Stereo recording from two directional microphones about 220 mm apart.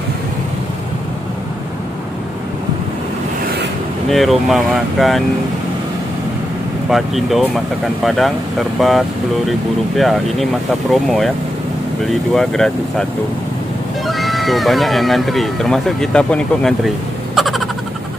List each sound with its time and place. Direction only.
4.1 s speech: centre (ahead or behind)
6.9 s speech: centre (ahead or behind)
14.0 s speech: centre (ahead or behind)
17.4 s a sound: centre (ahead or behind)